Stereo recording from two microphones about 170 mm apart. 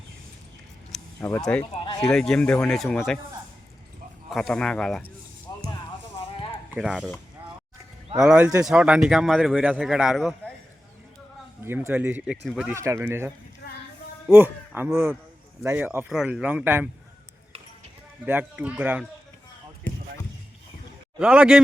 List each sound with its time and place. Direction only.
0.9 s a sound: centre (ahead or behind)
1.7 s speech: 25° left (ahead or behind)
2.1 s a man's voice: 5° left (ahead or behind)
4.3 s a man's voice: centre (ahead or behind)
6.7 s a man's voice: 5° right (ahead or behind)
8.2 s a man's voice: 5° right (ahead or behind)
11.6 s a man's voice: 15° right (ahead or behind)
12.7 s speech: 15° right (ahead or behind)
18.3 s speech: 10° right (ahead or behind)
21.2 s a man's voice: 5° right (ahead or behind)